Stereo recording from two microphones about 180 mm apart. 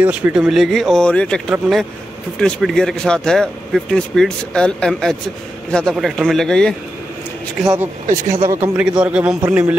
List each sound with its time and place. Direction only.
0.0 s speech: 10° right (ahead or behind)
7.6 s speech: 20° right (ahead or behind)
8.7 s a man's voice: 5° right (ahead or behind)